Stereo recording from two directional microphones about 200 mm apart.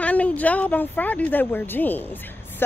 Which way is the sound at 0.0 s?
5° left (ahead or behind).